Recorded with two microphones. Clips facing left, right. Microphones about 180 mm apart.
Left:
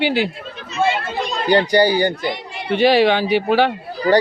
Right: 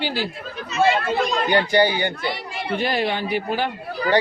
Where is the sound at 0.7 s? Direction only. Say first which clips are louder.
Right 1 dB; 25° left (ahead or behind).